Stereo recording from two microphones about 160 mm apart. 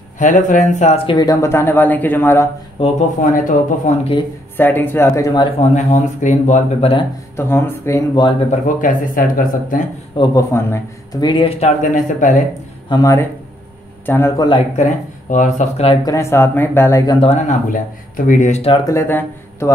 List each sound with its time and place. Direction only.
0.2 s speech: 50° left (ahead or behind); by 2.4 s 10° left (ahead or behind)
3.2 s speech: 55° left (ahead or behind)
4.6 s speech: 10° left (ahead or behind)
5.6 s speech: 45° left (ahead or behind)
7.3 s speech: 15° left (ahead or behind)
8.5 s speech: 55° left (ahead or behind)
10.3 s speech: 20° left (ahead or behind)
11.6 s speech: 50° left (ahead or behind)
12.9 s speech: 20° left (ahead or behind)
14.3 s speech: 25° left (ahead or behind)
14.8 s speech: 50° left (ahead or behind)
15.9 s speech: 25° left (ahead or behind)
17.3 s speech: 50° left (ahead or behind)
18.9 s speech: 15° left (ahead or behind)